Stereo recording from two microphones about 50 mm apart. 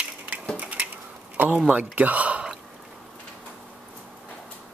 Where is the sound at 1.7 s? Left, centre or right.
Right.